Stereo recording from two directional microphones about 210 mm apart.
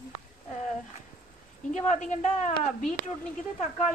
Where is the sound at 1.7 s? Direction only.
35° left (ahead or behind).